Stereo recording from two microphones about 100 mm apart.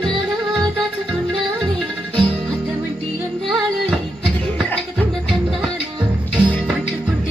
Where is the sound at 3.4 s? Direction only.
Centre (ahead or behind).